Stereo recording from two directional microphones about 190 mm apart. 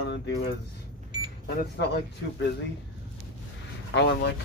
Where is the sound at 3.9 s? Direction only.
65° left (ahead or behind).